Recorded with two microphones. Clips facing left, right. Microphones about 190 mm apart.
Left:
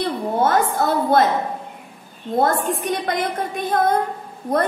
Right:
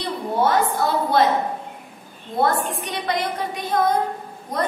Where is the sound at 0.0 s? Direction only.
50° left (ahead or behind).